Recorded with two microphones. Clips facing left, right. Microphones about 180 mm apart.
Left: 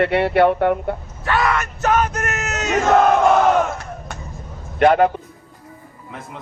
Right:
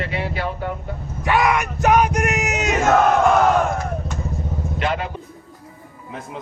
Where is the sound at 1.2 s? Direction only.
15° right (ahead or behind).